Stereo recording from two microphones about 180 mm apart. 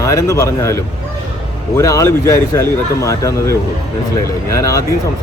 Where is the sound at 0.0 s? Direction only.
20° left (ahead or behind).